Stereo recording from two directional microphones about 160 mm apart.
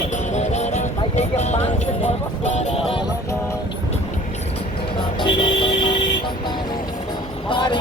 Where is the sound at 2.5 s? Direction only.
45° left (ahead or behind).